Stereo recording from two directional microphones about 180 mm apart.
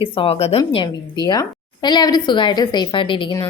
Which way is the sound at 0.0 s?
30° left (ahead or behind).